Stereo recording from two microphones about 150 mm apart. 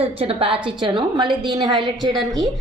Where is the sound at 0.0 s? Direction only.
40° right (ahead or behind).